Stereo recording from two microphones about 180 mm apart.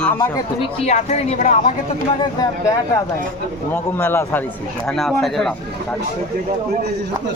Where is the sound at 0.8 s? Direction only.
40° left (ahead or behind).